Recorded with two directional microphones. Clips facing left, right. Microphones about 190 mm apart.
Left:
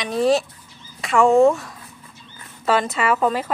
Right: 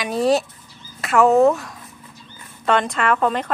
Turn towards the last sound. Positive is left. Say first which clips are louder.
# even
turn(degrees=5)  # may be behind; listen again after turning